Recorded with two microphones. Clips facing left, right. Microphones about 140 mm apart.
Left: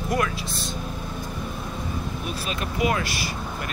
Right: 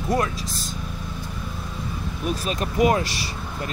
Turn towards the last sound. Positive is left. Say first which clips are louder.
# even
turn(degrees=-35)  # may be behind; listen again after turning